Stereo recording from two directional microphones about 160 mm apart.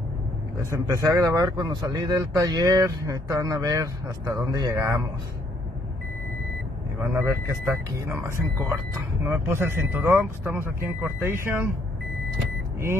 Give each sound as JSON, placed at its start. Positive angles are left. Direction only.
{"t": 0.7, "sound": "speech", "side_deg": -20}
{"t": 7.0, "sound": "speech", "side_deg": -20}